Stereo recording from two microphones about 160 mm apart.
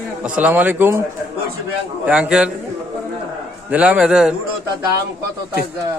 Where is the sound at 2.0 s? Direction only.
5° right (ahead or behind).